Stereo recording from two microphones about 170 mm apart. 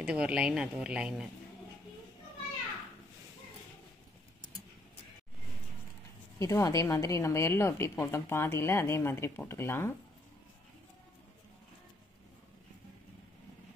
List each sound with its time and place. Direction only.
0.0 s a woman's voice: 5° right (ahead or behind)
6.4 s speech: 20° left (ahead or behind)